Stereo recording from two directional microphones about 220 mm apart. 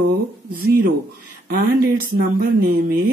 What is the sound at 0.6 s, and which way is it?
Speech, 45° right (ahead or behind).